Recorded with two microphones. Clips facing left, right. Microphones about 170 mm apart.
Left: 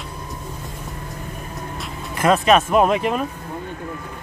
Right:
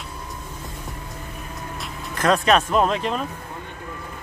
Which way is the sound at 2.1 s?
5° left (ahead or behind).